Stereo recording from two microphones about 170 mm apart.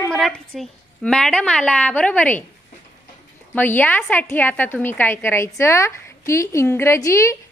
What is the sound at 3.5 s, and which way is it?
A woman's voice, 10° left (ahead or behind).